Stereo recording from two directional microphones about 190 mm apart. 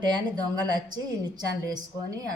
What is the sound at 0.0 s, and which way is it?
A woman's voice, 20° right (ahead or behind).